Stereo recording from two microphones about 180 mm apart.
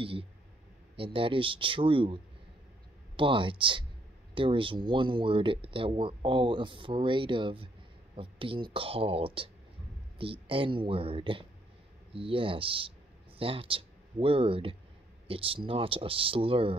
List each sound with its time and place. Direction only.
0.0 s speech: 30° right (ahead or behind)
3.2 s speech: 30° right (ahead or behind)